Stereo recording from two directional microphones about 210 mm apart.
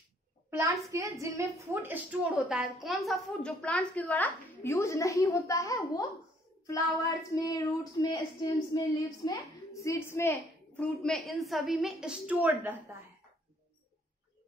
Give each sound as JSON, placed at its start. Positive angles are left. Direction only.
{"t": 0.5, "sound": "a child's voice", "side_deg": -10}